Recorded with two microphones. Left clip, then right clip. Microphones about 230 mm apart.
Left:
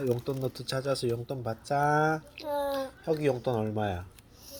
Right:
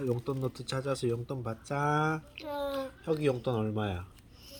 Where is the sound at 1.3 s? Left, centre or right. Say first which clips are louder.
Left 5 dB; centre.